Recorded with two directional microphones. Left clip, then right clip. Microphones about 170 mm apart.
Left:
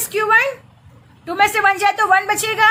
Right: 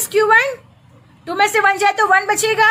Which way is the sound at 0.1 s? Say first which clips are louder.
Right 2 dB; 15° right (ahead or behind).